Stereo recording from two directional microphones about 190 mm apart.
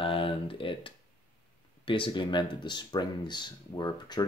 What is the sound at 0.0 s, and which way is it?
Typing, 30° left (ahead or behind).